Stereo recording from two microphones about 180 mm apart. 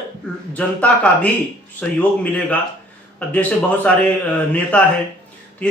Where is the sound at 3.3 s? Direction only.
5° left (ahead or behind).